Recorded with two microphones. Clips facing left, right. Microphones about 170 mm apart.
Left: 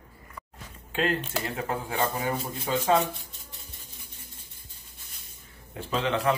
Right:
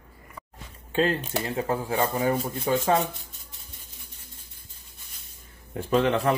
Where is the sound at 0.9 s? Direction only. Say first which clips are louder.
Right 3 dB; 30° right (ahead or behind).